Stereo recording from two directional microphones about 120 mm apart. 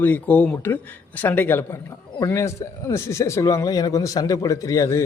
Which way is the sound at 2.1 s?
30° left (ahead or behind).